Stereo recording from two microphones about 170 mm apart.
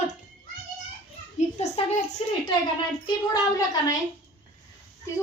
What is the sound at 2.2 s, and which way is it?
Speech, 35° left (ahead or behind).